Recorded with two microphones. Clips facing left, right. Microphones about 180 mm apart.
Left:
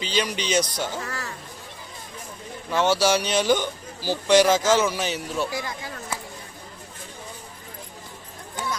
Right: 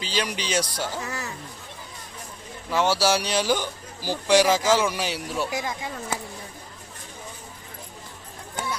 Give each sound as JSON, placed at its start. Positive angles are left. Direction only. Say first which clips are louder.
{"t": 0.0, "sound": "speech", "louder": "left 2 dB", "side_deg": -5}
{"t": 2.6, "sound": "speech", "louder": "left 1 dB", "side_deg": -10}
{"t": 5.5, "sound": "speech", "louder": "right 2 dB", "side_deg": -20}